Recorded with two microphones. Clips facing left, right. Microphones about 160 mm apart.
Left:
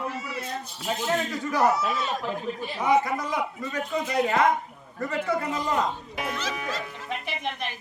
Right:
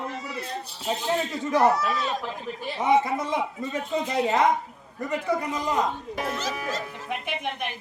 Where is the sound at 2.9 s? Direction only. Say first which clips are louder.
Right 1 dB; 25° right (ahead or behind).